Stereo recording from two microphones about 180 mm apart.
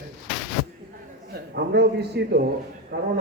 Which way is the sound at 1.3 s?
65° right (ahead or behind).